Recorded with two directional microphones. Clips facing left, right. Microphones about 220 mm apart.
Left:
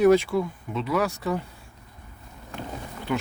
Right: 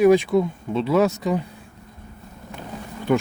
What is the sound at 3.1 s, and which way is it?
Speech, 50° right (ahead or behind).